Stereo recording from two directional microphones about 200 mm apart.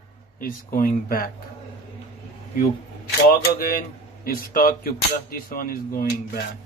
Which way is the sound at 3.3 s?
45° left (ahead or behind).